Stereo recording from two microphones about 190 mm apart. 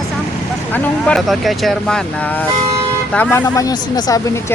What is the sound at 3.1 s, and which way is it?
Speech, 10° left (ahead or behind).